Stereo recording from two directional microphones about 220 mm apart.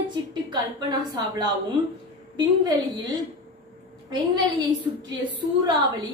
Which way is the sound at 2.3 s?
20° right (ahead or behind).